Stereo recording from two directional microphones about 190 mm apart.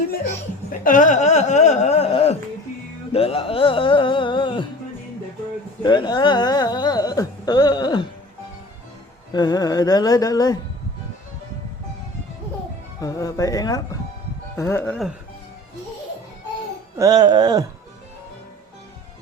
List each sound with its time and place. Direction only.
0.9 s speech: 40° left (ahead or behind); by 4.6 s 25° left (ahead or behind)
5.8 s speech: 25° left (ahead or behind)
9.3 s speech: 20° left (ahead or behind)
13.0 s speech: 15° left (ahead or behind)
17.0 s a sound: 20° right (ahead or behind)